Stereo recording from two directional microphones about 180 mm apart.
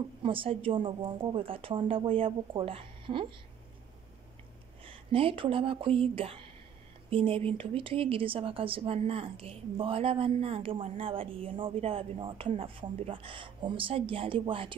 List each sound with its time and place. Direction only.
0.2 s speech: 30° right (ahead or behind)
4.8 s speech: 30° right (ahead or behind)